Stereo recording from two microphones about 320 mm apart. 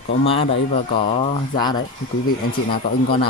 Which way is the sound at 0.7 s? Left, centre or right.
Left.